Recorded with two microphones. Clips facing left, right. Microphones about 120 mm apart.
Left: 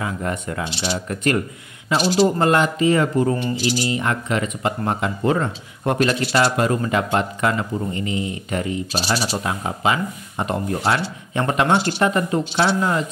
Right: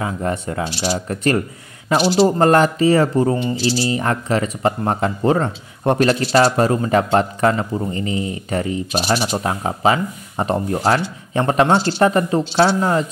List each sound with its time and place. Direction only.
0.0 s speech: 30° right (ahead or behind)